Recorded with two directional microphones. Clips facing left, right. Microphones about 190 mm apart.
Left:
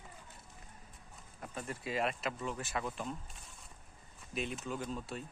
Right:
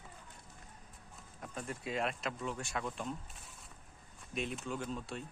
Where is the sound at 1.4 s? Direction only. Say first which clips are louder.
Even; centre (ahead or behind).